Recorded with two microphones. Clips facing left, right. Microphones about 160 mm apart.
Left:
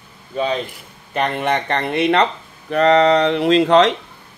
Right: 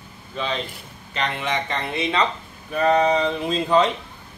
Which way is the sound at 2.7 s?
75° left (ahead or behind).